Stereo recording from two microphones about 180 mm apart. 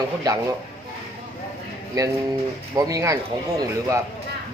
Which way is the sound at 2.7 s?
20° right (ahead or behind).